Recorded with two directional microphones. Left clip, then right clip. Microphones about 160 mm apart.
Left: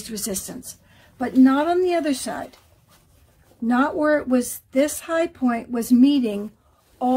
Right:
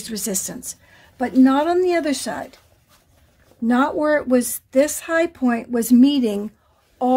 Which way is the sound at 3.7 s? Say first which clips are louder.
Right 1 dB; 35° right (ahead or behind).